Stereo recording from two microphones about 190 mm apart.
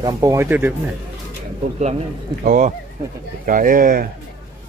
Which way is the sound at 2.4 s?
40° right (ahead or behind).